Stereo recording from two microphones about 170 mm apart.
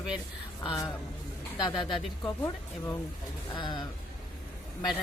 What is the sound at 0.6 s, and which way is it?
Speech, 30° left (ahead or behind).